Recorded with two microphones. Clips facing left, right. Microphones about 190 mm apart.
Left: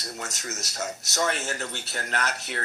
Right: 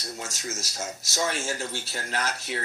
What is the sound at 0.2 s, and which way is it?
Speech, 70° left (ahead or behind).